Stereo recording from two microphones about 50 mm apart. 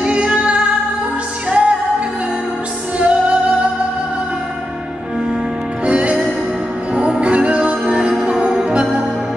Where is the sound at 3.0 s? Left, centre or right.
Right.